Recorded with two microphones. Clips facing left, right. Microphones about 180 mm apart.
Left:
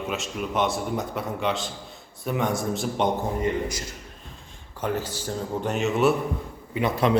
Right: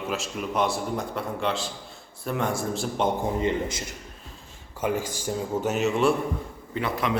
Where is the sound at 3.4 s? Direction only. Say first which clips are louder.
Even; 25° right (ahead or behind).